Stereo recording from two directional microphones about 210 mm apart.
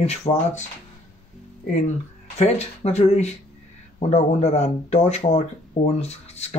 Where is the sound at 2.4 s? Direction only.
30° left (ahead or behind).